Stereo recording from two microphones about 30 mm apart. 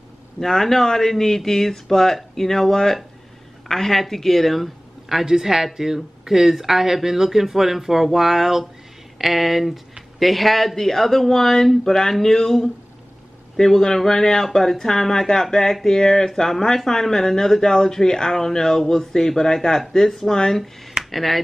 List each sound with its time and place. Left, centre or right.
0.4 s speech: centre
5.1 s speech: centre